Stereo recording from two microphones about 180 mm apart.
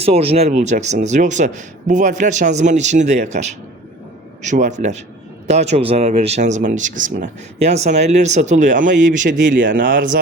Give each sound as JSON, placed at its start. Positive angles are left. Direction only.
{"t": 0.0, "sound": "speech", "side_deg": -35}